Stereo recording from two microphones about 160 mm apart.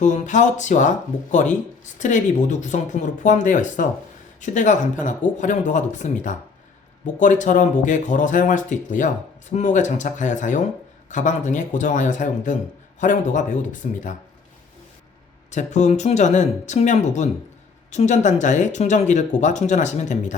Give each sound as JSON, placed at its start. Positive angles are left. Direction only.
{"t": 0.0, "sound": "speech", "side_deg": 50}
{"t": 15.4, "sound": "speech", "side_deg": 50}